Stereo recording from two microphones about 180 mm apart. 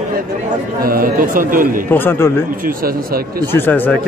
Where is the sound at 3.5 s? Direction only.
10° left (ahead or behind).